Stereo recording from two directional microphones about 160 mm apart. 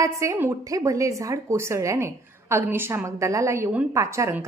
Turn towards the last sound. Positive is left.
turn(degrees=-20)  # may be behind; listen again after turning